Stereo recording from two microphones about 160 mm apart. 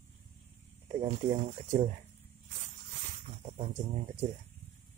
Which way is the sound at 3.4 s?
45° right (ahead or behind).